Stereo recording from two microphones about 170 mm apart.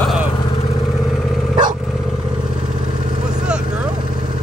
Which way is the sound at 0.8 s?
Centre (ahead or behind).